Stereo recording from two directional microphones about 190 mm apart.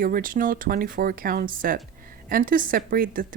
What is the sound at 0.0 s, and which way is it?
A woman's voice, 45° right (ahead or behind).